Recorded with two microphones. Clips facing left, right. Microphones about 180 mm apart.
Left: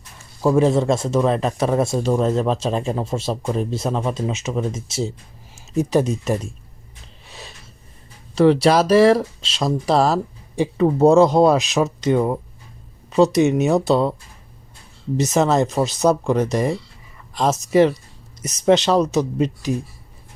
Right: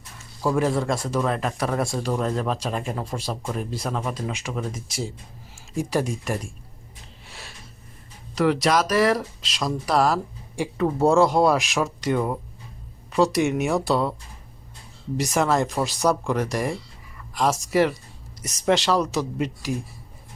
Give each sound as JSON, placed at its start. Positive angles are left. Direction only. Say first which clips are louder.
{"t": 0.4, "sound": "speech", "louder": "left 6 dB", "side_deg": 25}
{"t": 8.4, "sound": "speech", "louder": "left 6 dB", "side_deg": 30}
{"t": 15.2, "sound": "speech", "louder": "left 4 dB", "side_deg": 20}